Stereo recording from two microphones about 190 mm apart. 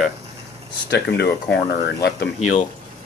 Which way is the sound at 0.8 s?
60° left (ahead or behind).